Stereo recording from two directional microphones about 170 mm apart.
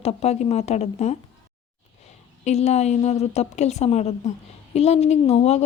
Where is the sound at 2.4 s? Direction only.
40° left (ahead or behind).